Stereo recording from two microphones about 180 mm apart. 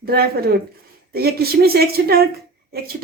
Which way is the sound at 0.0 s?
60° right (ahead or behind).